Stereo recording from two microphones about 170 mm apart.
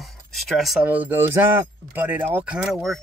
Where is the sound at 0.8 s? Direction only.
10° right (ahead or behind).